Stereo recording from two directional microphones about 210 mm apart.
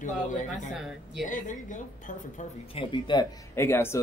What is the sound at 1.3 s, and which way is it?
A woman's voice, 35° left (ahead or behind).